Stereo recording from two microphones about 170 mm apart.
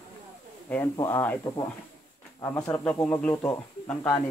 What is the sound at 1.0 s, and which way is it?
Speech, 15° left (ahead or behind).